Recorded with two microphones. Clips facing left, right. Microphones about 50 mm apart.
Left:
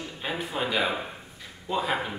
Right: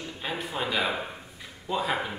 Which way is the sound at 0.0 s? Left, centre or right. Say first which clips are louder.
Left 1 dB; centre.